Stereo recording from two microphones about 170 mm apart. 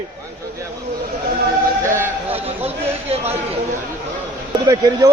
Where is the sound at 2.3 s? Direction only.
35° right (ahead or behind).